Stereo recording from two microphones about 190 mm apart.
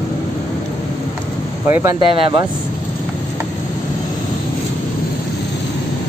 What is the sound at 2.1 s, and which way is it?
Speech, 25° right (ahead or behind).